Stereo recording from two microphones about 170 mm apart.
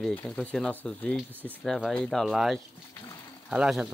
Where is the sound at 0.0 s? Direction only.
5° left (ahead or behind).